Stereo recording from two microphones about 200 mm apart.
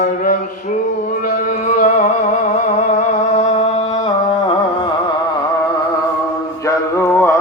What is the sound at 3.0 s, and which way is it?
Music, 35° left (ahead or behind).